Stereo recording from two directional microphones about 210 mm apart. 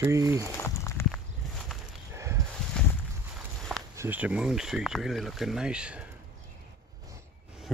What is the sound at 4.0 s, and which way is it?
Speech, 10° right (ahead or behind).